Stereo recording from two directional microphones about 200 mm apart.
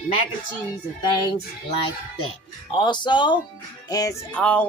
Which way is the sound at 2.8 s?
20° left (ahead or behind).